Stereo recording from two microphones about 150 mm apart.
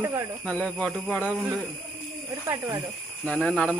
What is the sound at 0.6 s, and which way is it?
Speech, 5° left (ahead or behind).